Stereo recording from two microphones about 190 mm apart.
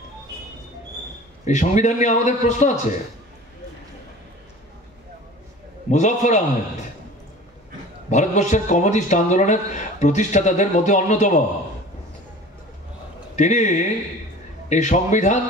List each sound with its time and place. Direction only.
1.4 s a man's voice: 40° left (ahead or behind)
5.9 s a man's voice: 40° left (ahead or behind)
8.1 s a man's voice: 40° left (ahead or behind)
13.4 s a man's voice: 40° left (ahead or behind)